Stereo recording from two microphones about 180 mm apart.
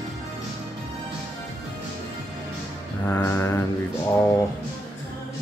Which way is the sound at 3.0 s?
15° left (ahead or behind).